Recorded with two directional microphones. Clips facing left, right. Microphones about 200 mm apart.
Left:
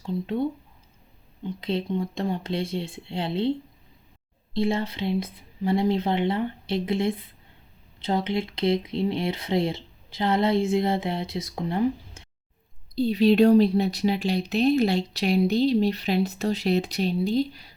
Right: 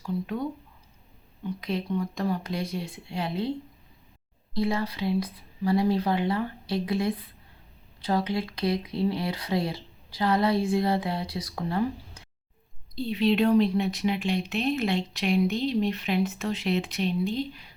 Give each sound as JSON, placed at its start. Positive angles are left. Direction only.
{"t": 0.0, "sound": "speech", "side_deg": 25}
{"t": 1.5, "sound": "speech", "side_deg": 25}
{"t": 4.5, "sound": "speech", "side_deg": 25}
{"t": 13.0, "sound": "speech", "side_deg": 40}